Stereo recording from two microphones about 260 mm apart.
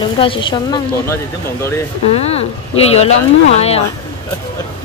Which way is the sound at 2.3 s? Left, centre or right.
Left.